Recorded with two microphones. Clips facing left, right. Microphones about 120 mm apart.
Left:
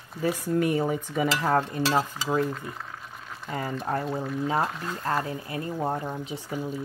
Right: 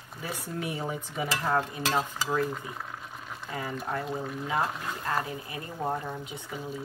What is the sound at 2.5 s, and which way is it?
Speech, 5° right (ahead or behind).